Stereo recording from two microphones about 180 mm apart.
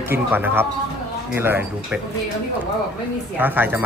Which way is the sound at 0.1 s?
10° right (ahead or behind).